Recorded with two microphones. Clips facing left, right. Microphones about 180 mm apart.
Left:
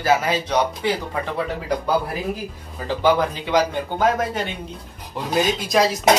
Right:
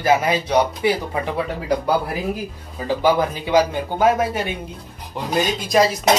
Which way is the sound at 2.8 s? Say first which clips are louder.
Right 1 dB; 10° right (ahead or behind).